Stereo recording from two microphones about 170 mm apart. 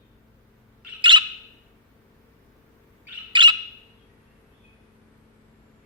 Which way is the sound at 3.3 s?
30° right (ahead or behind).